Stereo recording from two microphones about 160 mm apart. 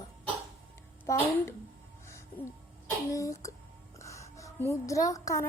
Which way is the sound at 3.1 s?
20° left (ahead or behind).